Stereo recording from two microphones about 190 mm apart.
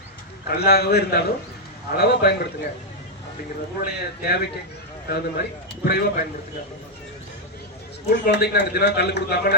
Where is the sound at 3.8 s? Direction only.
55° left (ahead or behind).